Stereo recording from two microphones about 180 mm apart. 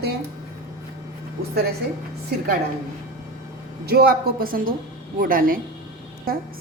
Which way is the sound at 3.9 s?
60° right (ahead or behind).